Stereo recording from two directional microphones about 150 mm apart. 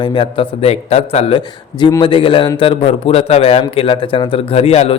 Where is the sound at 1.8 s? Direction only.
30° left (ahead or behind).